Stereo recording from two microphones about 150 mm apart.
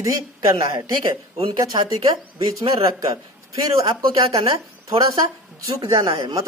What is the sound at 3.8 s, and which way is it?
Speech, 25° right (ahead or behind).